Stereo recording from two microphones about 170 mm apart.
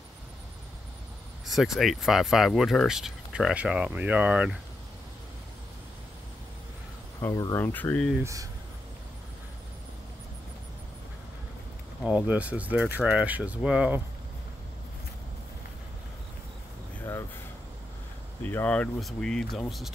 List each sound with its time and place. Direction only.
1.4 s speech: centre (ahead or behind)
7.2 s speech: 20° left (ahead or behind)
8.2 s speech: 20° right (ahead or behind)
12.0 s speech: 5° right (ahead or behind)
18.4 s speech: 10° left (ahead or behind)